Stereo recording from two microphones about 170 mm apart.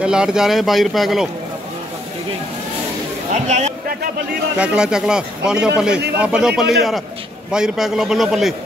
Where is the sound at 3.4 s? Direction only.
45° right (ahead or behind).